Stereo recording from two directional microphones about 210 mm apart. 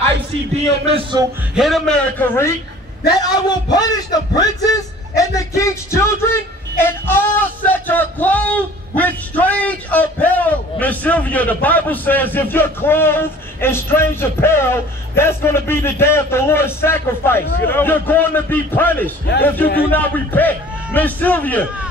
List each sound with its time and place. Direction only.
0.8 s speech: 25° right (ahead or behind)
1.5 s a man's voice: centre (ahead or behind)
3.7 s a man's voice: 20° left (ahead or behind)
19.6 s speech: 45° left (ahead or behind)
19.9 s speech: 10° left (ahead or behind)